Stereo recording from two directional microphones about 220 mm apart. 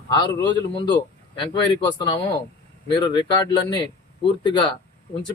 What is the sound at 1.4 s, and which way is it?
Speech, 20° left (ahead or behind).